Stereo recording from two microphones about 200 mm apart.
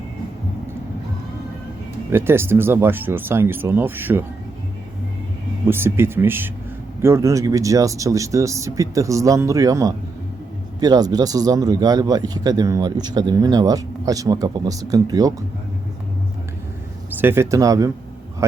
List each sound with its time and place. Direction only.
2.1 s speech: 10° right (ahead or behind)
5.6 s speech: 10° right (ahead or behind)
17.1 s speech: 10° right (ahead or behind)